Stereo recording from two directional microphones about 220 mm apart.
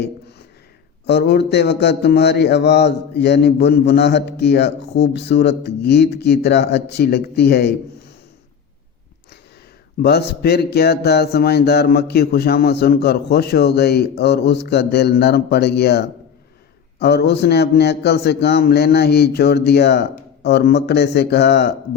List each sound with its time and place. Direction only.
1.0 s a man's voice: 50° left (ahead or behind)
10.0 s a man's voice: 45° left (ahead or behind)